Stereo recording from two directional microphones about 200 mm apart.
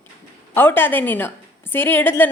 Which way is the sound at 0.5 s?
10° left (ahead or behind).